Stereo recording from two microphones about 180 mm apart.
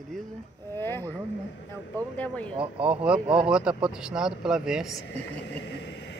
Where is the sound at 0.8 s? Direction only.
10° left (ahead or behind).